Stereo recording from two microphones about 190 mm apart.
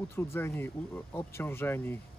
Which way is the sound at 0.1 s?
15° left (ahead or behind).